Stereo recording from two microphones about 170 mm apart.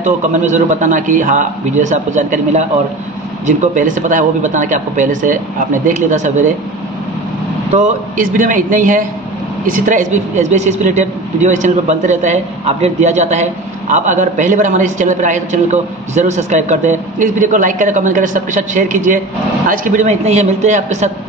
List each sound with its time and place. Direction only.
0.0 s speech: 45° right (ahead or behind)
7.7 s speech: 45° right (ahead or behind)